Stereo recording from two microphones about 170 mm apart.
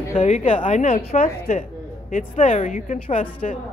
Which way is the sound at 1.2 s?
55° left (ahead or behind).